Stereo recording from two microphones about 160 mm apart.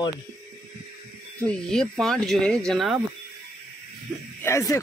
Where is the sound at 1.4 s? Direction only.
5° left (ahead or behind).